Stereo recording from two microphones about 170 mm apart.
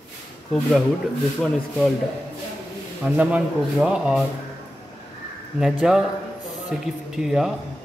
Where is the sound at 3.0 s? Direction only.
10° right (ahead or behind).